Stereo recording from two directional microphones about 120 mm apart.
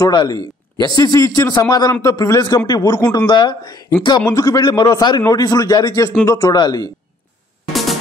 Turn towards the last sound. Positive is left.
turn(degrees=0)  # may be behind; listen again after turning